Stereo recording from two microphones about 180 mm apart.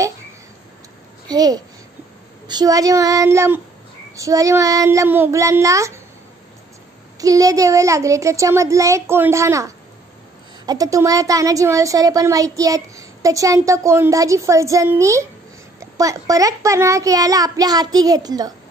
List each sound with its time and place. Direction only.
1.2 s a child's voice: 20° right (ahead or behind)
7.2 s a woman's voice: 20° right (ahead or behind)